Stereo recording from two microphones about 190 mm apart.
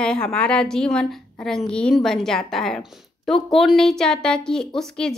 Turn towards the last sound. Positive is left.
turn(degrees=5)  # may be behind; listen again after turning